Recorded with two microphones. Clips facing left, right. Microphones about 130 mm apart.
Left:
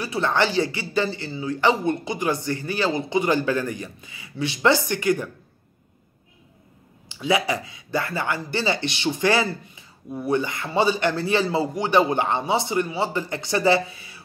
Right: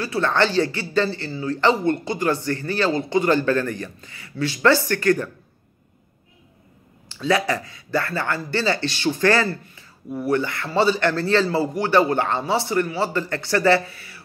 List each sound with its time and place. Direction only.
0.0 s speech: 15° left (ahead or behind)
7.1 s speech: 15° left (ahead or behind)